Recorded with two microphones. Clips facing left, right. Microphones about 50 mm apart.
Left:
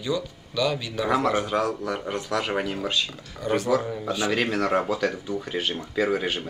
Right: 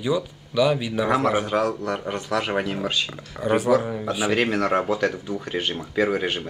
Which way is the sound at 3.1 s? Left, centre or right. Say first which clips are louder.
Right 3 dB; centre.